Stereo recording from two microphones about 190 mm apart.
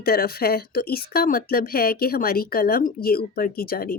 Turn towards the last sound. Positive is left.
turn(degrees=50)  # may be behind; listen again after turning